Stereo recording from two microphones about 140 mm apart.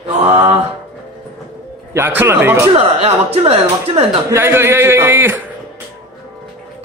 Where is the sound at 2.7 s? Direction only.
45° right (ahead or behind).